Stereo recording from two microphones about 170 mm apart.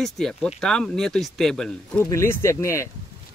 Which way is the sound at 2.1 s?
15° left (ahead or behind).